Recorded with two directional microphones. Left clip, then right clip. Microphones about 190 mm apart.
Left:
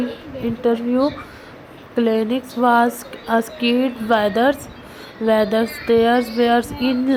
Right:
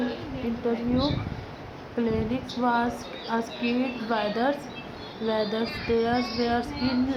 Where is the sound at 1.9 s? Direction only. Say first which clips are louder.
Left 9 dB; 30° left (ahead or behind).